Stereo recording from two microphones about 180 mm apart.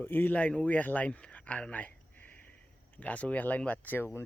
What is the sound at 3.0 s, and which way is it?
Speech, 10° left (ahead or behind).